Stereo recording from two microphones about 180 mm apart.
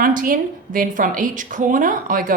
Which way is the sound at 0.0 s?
50° right (ahead or behind).